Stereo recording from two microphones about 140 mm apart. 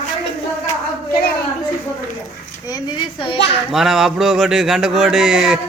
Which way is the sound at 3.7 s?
Centre (ahead or behind).